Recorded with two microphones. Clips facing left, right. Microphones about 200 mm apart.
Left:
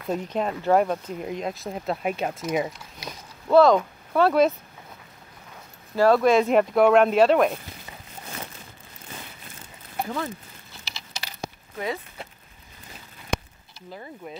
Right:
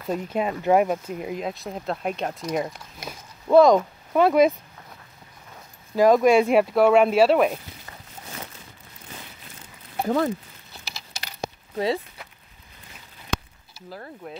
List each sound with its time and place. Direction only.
0.0 s speech: 5° right (ahead or behind)
3.1 s a sound: 15° right (ahead or behind)
4.1 s speech: 15° right (ahead or behind)
5.9 s speech: 15° right (ahead or behind)
10.0 s speech: 45° right (ahead or behind)
11.7 s speech: 30° right (ahead or behind)
13.7 s speech: centre (ahead or behind)